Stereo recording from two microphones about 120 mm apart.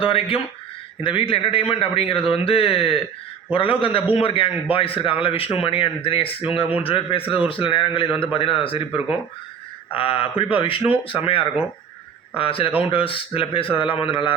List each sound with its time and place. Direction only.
0.0 s a man's voice: 50° left (ahead or behind)
9.9 s a man's voice: 50° left (ahead or behind)